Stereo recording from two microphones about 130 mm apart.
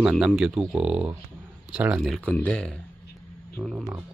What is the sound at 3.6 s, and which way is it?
Speech, 15° right (ahead or behind).